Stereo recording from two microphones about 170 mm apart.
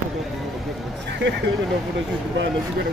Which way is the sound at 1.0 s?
90° right.